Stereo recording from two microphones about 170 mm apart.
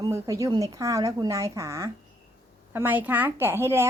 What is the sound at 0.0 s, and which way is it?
Speech, 20° right (ahead or behind).